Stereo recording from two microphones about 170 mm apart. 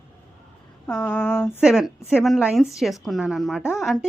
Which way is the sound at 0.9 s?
5° left (ahead or behind).